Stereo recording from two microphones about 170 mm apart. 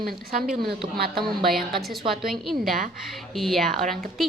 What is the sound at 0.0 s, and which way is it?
Speech, 60° right (ahead or behind).